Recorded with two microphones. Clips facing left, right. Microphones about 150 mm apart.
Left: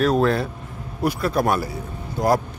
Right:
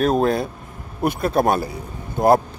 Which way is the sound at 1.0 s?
25° right (ahead or behind).